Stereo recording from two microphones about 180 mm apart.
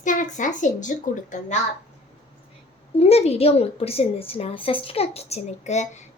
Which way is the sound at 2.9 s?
35° left (ahead or behind).